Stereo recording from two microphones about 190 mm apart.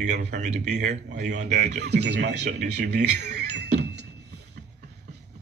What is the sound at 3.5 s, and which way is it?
Music, 65° right (ahead or behind).